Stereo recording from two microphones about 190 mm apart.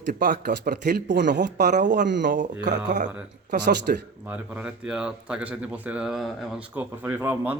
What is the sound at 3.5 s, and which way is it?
Speech, 65° right (ahead or behind).